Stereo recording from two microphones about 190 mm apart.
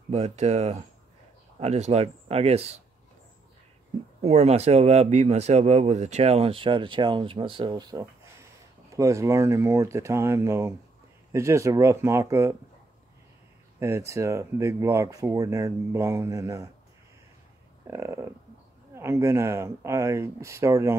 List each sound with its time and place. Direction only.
0.1 s speech: 35° right (ahead or behind)
4.2 s speech: 35° right (ahead or behind); by 12.4 s 15° right (ahead or behind)
13.7 s speech: 15° right (ahead or behind)
17.8 s speech: 15° right (ahead or behind)